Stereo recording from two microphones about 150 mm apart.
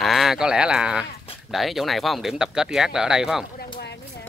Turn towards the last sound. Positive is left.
turn(degrees=-5)  # may be behind; listen again after turning